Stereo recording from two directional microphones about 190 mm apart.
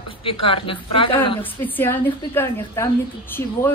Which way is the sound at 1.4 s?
10° left (ahead or behind).